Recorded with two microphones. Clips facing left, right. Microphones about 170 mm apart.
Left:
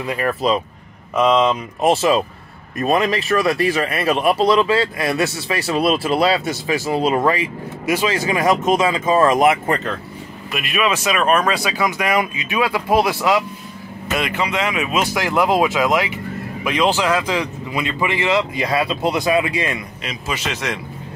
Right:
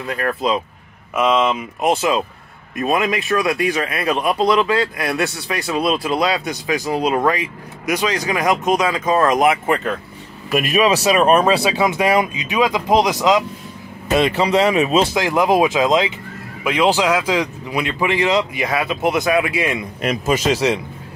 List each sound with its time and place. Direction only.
0.0 s speech: 10° left (ahead or behind)
1.1 s speech: 5° right (ahead or behind)
10.5 s speech: 40° right (ahead or behind); by 13.4 s 15° right (ahead or behind)
14.1 s speech: 30° right (ahead or behind)
20.0 s speech: 50° right (ahead or behind)